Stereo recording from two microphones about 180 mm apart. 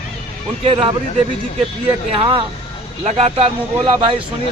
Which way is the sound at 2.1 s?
30° right (ahead or behind).